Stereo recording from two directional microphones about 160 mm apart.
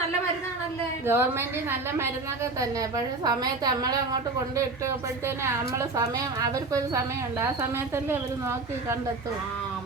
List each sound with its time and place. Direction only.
1.0 s a woman's voice: 15° right (ahead or behind)
5.2 s a woman's voice: 15° right (ahead or behind)